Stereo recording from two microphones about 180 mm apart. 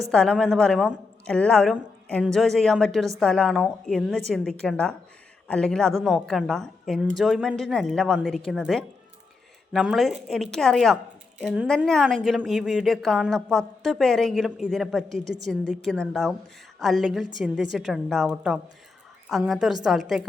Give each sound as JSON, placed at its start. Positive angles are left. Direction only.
{"t": 0.1, "sound": "a woman's voice", "side_deg": 5}